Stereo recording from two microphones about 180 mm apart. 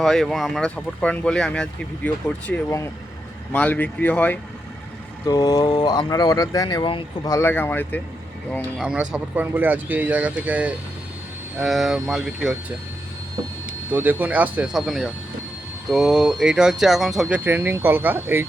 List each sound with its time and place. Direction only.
0.0 s speech: centre (ahead or behind)
5.2 s speech: 20° left (ahead or behind)
7.3 s speech: 10° left (ahead or behind)
8.8 s speech: 5° right (ahead or behind)
13.9 s speech: 10° right (ahead or behind)